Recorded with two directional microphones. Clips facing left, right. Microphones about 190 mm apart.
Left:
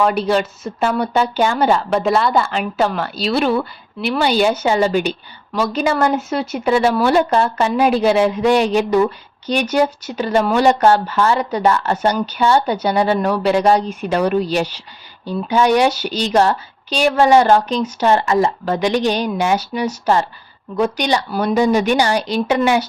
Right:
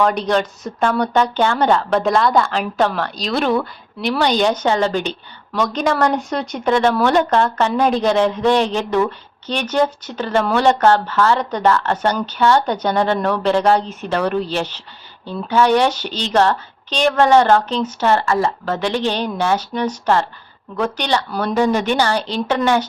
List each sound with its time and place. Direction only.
0.0 s speech: 5° left (ahead or behind)